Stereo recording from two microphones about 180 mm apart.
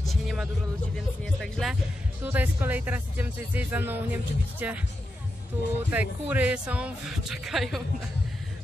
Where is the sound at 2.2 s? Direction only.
10° right (ahead or behind).